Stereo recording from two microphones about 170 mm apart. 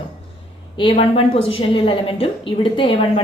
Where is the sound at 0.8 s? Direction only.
35° left (ahead or behind).